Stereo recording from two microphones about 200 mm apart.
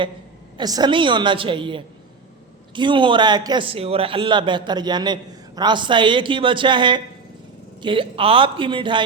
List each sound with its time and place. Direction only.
0.5 s a man's voice: 20° right (ahead or behind)